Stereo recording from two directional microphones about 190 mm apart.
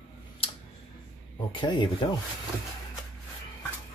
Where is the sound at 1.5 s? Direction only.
25° left (ahead or behind).